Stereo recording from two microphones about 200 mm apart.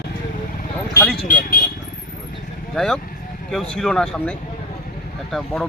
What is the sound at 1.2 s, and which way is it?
Speech, 45° left (ahead or behind).